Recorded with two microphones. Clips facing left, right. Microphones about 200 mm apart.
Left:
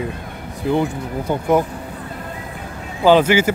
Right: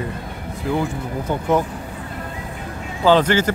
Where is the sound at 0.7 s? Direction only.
15° left (ahead or behind).